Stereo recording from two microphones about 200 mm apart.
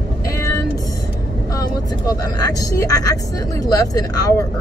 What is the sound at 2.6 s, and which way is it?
Speech, 15° left (ahead or behind).